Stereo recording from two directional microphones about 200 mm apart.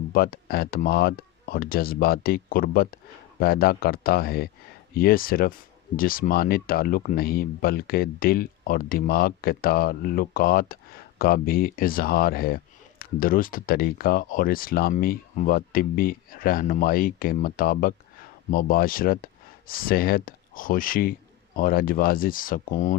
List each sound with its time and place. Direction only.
0.1 s speech: 50° left (ahead or behind)